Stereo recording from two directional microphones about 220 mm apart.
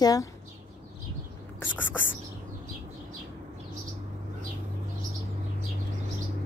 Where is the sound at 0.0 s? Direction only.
15° left (ahead or behind).